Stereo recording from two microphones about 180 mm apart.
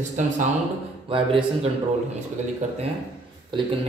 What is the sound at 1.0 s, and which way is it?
Speech, 30° right (ahead or behind).